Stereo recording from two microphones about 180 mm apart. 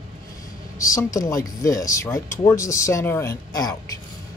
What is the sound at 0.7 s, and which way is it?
Speech, 20° left (ahead or behind).